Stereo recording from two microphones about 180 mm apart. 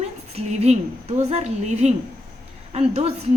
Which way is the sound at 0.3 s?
40° right (ahead or behind).